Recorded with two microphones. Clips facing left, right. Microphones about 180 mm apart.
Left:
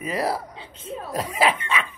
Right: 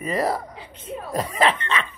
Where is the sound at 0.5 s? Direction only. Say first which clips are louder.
Even; 25° left (ahead or behind).